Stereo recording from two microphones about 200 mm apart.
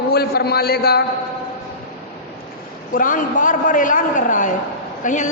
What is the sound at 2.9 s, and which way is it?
A man's voice, 40° left (ahead or behind).